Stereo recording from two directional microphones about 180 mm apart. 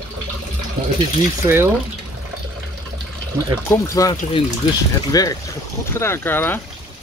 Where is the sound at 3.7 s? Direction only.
20° left (ahead or behind).